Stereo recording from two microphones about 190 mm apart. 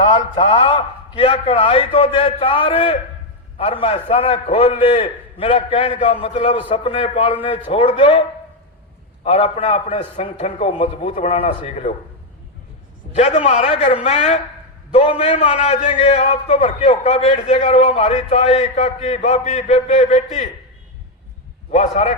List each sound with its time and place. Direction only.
0.0 s a man's voice: 25° left (ahead or behind)
9.2 s a man's voice: 30° left (ahead or behind)
13.1 s a man's voice: 30° left (ahead or behind)
21.7 s a man's voice: 35° left (ahead or behind)